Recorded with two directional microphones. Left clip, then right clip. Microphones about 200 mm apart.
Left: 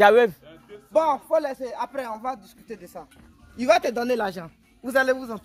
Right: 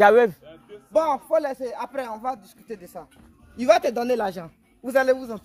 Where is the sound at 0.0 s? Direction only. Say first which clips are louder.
Even; 20° right (ahead or behind).